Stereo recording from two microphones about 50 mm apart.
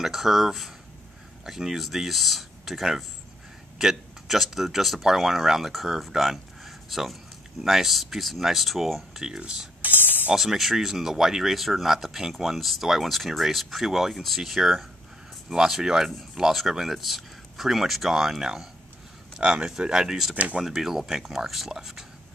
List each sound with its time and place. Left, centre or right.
0.0 s speech: centre
9.8 s speech: right
10.3 s speech: centre